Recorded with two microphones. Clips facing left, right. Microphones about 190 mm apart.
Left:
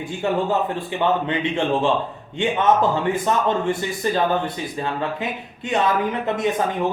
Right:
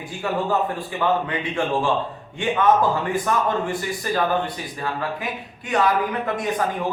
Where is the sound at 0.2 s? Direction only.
25° left (ahead or behind).